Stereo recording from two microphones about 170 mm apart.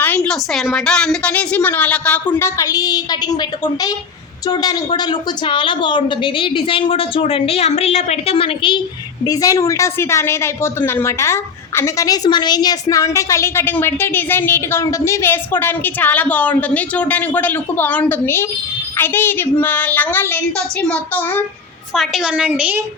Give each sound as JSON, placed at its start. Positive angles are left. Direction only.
{"t": 0.0, "sound": "a woman's voice", "side_deg": 10}
{"t": 9.2, "sound": "a woman's voice", "side_deg": 20}
{"t": 21.9, "sound": "a woman's voice", "side_deg": 0}